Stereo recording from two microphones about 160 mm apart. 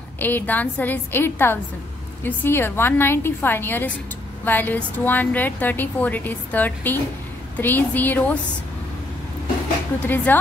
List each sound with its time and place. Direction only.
0.2 s a woman's voice: 10° left (ahead or behind)
10.0 s a woman's voice: 10° left (ahead or behind)